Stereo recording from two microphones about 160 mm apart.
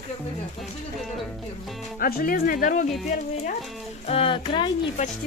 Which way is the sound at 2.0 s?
65° left (ahead or behind).